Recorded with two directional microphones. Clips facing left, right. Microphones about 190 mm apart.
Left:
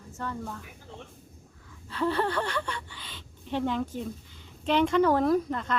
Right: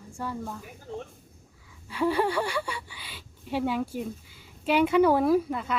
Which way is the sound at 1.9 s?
10° right (ahead or behind).